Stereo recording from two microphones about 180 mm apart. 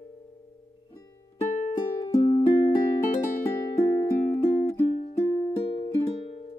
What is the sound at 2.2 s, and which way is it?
Music, 20° left (ahead or behind).